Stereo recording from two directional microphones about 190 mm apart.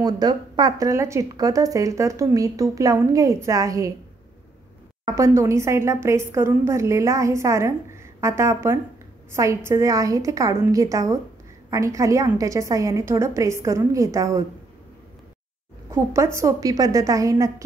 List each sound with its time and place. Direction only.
0.0 s speech: 20° right (ahead or behind)
5.0 s speech: 15° right (ahead or behind)
15.9 s speech: 15° right (ahead or behind)